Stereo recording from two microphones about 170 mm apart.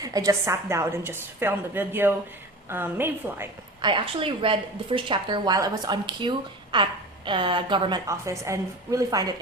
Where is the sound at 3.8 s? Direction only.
30° right (ahead or behind).